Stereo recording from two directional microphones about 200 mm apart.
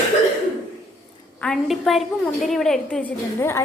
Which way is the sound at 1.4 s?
Centre (ahead or behind).